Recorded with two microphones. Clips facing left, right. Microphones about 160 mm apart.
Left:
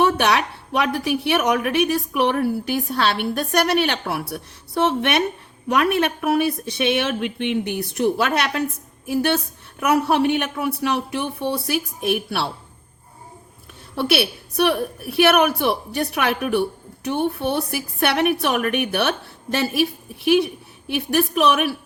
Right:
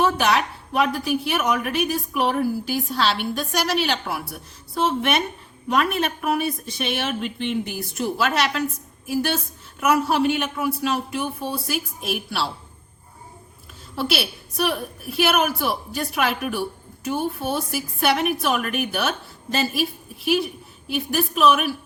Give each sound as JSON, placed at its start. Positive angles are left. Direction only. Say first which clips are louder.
{"t": 0.0, "sound": "a woman's voice", "louder": "left 2 dB", "side_deg": 65}
{"t": 9.9, "sound": "a woman's voice", "louder": "left 2 dB", "side_deg": 60}
{"t": 13.9, "sound": "a woman's voice", "louder": "left 4 dB", "side_deg": 60}